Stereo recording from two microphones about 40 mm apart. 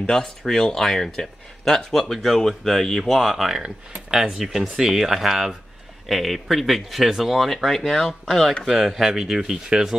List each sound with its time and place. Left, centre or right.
0.1 s speech: centre
7.4 s speech: centre